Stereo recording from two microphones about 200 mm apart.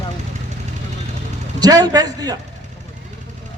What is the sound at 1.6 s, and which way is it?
Speech, 20° right (ahead or behind).